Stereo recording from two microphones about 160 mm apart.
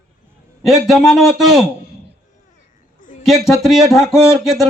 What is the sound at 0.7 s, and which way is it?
Speech, centre (ahead or behind).